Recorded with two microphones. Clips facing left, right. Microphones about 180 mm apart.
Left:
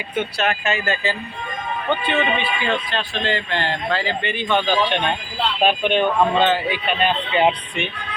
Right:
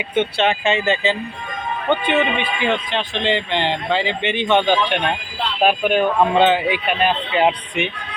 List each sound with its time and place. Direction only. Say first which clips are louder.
0.1 s speech: right 4 dB; 25° right (ahead or behind)
5.6 s speech: right 2 dB; 5° right (ahead or behind)
6.3 s speech: right 3 dB; 15° right (ahead or behind)